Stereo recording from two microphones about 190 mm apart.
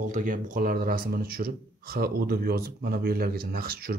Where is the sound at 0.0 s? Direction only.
40° right (ahead or behind).